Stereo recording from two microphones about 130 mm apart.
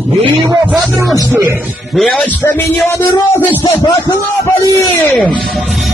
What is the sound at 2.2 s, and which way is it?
Speech, 15° left (ahead or behind).